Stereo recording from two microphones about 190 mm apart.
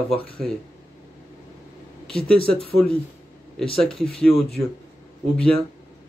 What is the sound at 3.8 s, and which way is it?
Speech, 5° left (ahead or behind).